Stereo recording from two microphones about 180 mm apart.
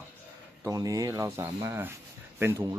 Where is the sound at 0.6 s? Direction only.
20° right (ahead or behind).